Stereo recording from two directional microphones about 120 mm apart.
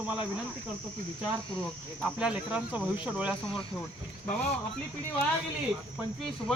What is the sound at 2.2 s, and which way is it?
Speech, 5° right (ahead or behind).